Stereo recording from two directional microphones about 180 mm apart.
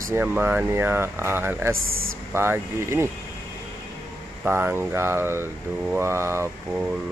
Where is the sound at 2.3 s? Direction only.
15° right (ahead or behind).